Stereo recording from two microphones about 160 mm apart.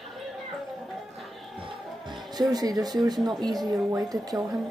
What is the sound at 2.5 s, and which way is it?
Speech, 25° right (ahead or behind).